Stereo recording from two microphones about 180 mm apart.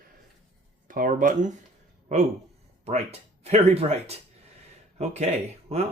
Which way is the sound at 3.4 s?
35° right (ahead or behind).